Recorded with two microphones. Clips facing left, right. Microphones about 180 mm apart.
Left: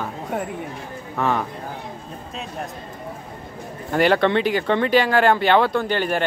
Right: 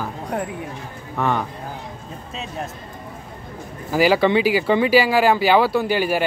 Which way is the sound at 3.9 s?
5° right (ahead or behind).